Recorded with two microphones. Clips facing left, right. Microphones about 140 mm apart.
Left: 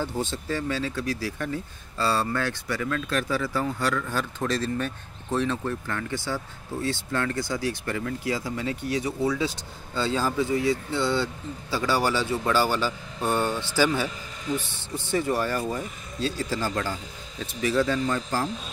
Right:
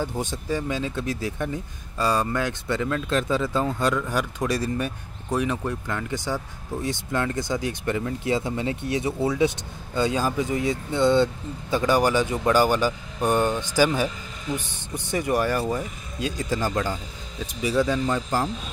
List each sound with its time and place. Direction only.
0.0 s speech: 15° right (ahead or behind)